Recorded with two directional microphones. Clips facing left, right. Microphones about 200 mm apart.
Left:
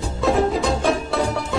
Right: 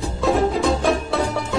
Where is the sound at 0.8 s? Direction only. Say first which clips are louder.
Even; centre (ahead or behind).